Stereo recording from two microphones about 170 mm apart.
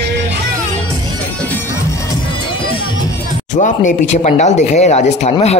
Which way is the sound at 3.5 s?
45° left (ahead or behind).